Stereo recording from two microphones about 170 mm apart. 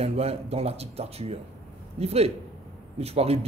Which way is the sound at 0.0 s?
35° right (ahead or behind).